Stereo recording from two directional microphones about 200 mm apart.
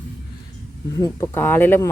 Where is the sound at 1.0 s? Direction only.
15° left (ahead or behind).